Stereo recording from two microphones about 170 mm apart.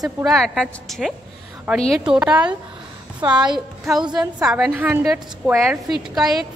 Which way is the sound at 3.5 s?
Centre (ahead or behind).